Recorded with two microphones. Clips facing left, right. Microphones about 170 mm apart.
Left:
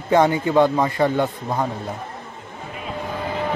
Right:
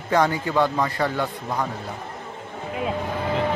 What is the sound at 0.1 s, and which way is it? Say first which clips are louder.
Speech: left 4 dB; 20° left (ahead or behind).